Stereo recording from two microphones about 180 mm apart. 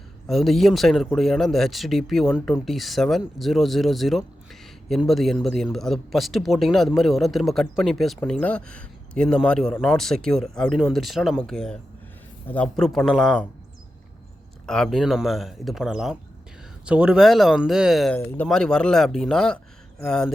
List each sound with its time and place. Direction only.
0.3 s speech: centre (ahead or behind)
14.7 s speech: centre (ahead or behind)
18.2 s speech: 15° left (ahead or behind)
18.4 s speech: 5° left (ahead or behind)